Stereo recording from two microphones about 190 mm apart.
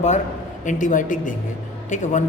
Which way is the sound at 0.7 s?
45° left (ahead or behind).